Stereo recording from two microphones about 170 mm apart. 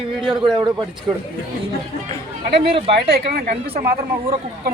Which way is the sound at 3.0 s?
65° right (ahead or behind).